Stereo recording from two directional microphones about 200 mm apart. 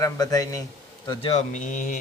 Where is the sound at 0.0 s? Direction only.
20° left (ahead or behind).